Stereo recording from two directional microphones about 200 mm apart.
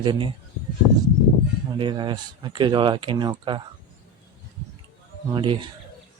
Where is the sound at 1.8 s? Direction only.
20° right (ahead or behind).